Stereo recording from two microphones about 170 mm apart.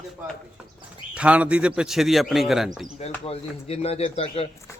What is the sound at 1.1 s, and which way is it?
Speech, 5° right (ahead or behind).